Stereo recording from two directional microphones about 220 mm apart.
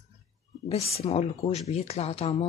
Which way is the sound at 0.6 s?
25° left (ahead or behind).